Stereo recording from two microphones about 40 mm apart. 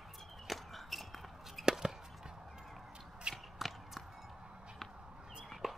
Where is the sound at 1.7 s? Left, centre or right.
Centre.